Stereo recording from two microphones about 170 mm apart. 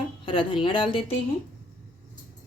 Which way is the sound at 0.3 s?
30° left (ahead or behind).